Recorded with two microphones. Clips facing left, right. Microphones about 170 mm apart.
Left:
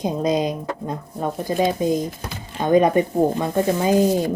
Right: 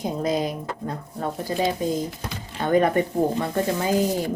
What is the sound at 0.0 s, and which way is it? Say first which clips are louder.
Speech: left 4 dB; 20° left (ahead or behind).